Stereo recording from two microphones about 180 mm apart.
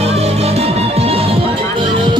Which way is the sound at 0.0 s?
35° right (ahead or behind).